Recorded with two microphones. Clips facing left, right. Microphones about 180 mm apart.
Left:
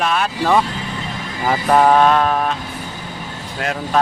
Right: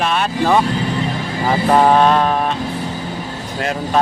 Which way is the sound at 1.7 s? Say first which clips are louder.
Even; 5° right (ahead or behind).